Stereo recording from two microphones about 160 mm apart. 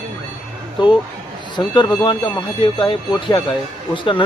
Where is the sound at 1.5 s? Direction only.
30° left (ahead or behind).